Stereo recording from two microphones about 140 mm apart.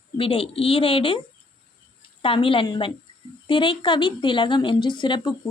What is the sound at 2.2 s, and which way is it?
A woman's voice, 40° left (ahead or behind).